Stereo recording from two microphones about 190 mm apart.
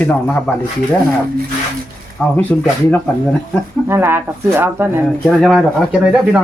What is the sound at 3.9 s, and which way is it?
Speech, 10° right (ahead or behind).